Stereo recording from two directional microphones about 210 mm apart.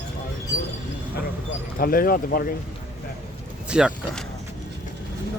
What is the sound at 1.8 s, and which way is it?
Speech, 45° left (ahead or behind).